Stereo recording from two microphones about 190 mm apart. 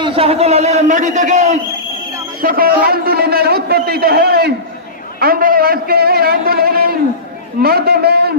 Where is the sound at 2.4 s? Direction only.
50° right (ahead or behind).